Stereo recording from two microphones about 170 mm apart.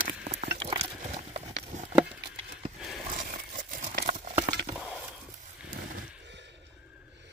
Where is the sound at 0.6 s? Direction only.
35° right (ahead or behind).